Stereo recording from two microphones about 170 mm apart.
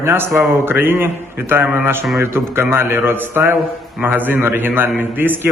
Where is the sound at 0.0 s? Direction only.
15° right (ahead or behind).